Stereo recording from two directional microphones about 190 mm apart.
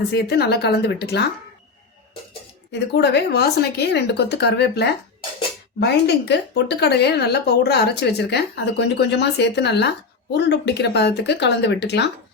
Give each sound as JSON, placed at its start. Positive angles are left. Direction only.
{"t": 0.1, "sound": "speech", "side_deg": 60}
{"t": 2.7, "sound": "speech", "side_deg": 60}